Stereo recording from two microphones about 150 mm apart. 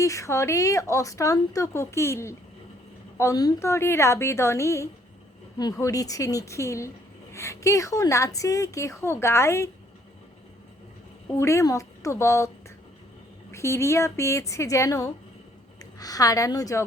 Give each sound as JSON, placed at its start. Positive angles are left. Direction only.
{"t": 0.0, "sound": "a woman's voice", "side_deg": 20}
{"t": 11.3, "sound": "a woman's voice", "side_deg": 20}
{"t": 13.5, "sound": "a woman's voice", "side_deg": 20}